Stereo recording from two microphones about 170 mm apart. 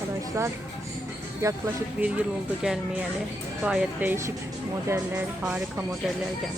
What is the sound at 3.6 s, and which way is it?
Speech, 5° right (ahead or behind).